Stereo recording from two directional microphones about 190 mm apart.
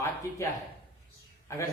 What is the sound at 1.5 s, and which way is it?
Speech, 15° left (ahead or behind).